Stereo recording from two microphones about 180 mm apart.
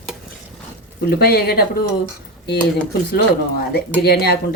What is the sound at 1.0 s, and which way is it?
Speech, 60° left (ahead or behind).